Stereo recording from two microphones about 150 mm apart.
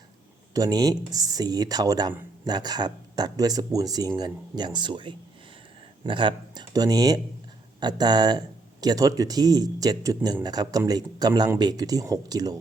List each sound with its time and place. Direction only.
0.5 s speech: 25° right (ahead or behind)